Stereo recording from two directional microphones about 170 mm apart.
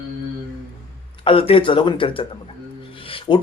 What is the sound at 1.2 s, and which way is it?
Speech, 30° left (ahead or behind).